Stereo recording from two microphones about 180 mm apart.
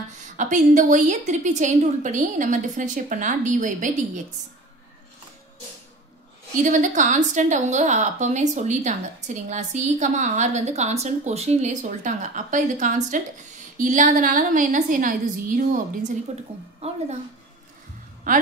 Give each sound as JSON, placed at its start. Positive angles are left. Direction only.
{"t": 0.4, "sound": "a woman's voice", "side_deg": -45}
{"t": 6.6, "sound": "a woman's voice", "side_deg": -45}
{"t": 18.3, "sound": "a woman's voice", "side_deg": -50}